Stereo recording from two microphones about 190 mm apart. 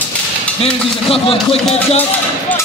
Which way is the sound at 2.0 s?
10° left (ahead or behind).